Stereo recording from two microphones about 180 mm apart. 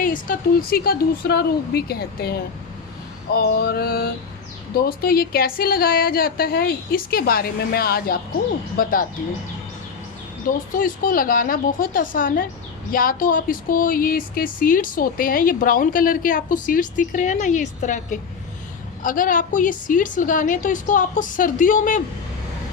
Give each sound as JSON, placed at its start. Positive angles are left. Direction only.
{"t": 0.0, "sound": "speech", "side_deg": 50}
{"t": 10.7, "sound": "speech", "side_deg": 50}